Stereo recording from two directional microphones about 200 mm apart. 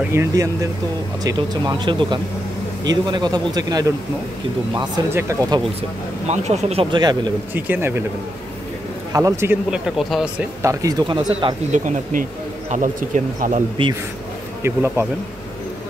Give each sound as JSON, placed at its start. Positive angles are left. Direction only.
{"t": 0.1, "sound": "speech", "side_deg": -15}
{"t": 5.8, "sound": "speech", "side_deg": -35}
{"t": 7.5, "sound": "speech", "side_deg": -10}
{"t": 9.1, "sound": "speech", "side_deg": -15}
{"t": 10.6, "sound": "speech", "side_deg": -15}
{"t": 11.7, "sound": "speech", "side_deg": -40}
{"t": 13.8, "sound": "speech", "side_deg": -25}
{"t": 14.6, "sound": "speech", "side_deg": -10}